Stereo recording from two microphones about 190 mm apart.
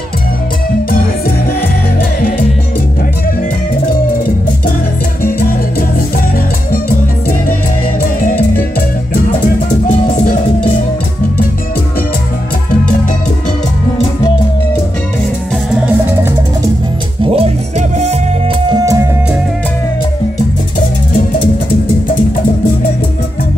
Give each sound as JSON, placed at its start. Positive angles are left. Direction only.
{"t": 6.7, "sound": "salsa music", "side_deg": 45}
{"t": 8.2, "sound": "music", "side_deg": 45}
{"t": 9.8, "sound": "music", "side_deg": 40}
{"t": 17.2, "sound": "music", "side_deg": -35}
{"t": 18.7, "sound": "music", "side_deg": -20}